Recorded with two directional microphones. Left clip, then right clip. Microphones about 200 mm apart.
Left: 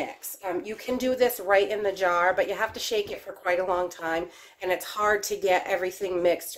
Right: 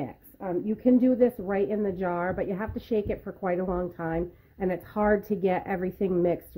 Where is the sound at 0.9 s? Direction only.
40° right (ahead or behind).